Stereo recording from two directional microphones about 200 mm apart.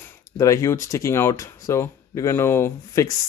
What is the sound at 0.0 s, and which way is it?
Speech, 15° left (ahead or behind).